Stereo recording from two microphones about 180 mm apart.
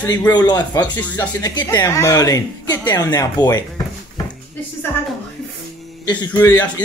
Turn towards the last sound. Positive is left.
turn(degrees=15)  # may be behind; listen again after turning